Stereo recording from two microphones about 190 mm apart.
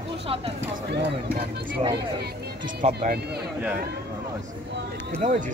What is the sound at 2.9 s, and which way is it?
Speech, 55° right (ahead or behind).